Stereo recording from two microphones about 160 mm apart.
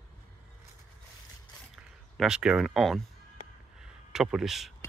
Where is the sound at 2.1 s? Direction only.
5° right (ahead or behind).